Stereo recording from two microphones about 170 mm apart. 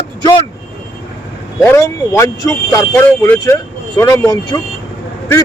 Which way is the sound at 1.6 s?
15° left (ahead or behind).